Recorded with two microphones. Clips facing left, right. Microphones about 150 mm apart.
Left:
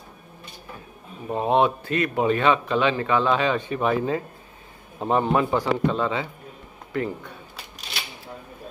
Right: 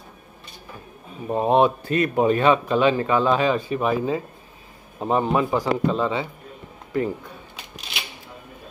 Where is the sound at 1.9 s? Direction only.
35° right (ahead or behind).